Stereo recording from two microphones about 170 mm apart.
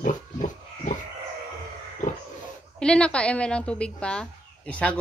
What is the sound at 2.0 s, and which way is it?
Dog, 50° left (ahead or behind).